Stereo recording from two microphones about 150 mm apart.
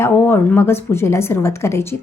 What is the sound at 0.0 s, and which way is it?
A woman's voice, 15° left (ahead or behind).